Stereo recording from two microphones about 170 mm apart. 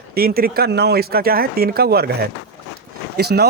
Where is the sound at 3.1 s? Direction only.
70° right (ahead or behind).